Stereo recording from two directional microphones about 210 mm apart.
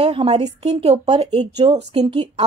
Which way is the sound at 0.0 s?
30° right (ahead or behind).